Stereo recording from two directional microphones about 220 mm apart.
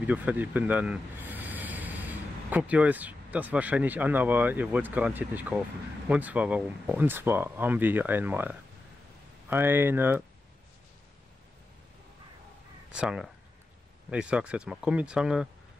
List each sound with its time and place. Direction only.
0.0 s speech: 5° right (ahead or behind)
12.9 s speech: 5° right (ahead or behind)